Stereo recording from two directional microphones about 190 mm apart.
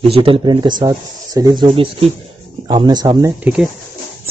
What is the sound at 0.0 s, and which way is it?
Speech, 30° right (ahead or behind).